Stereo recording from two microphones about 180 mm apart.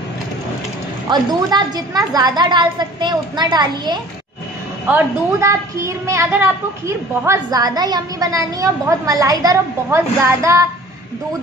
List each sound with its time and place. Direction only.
1.1 s a woman's voice: 20° right (ahead or behind)
4.8 s a woman's voice: 15° right (ahead or behind)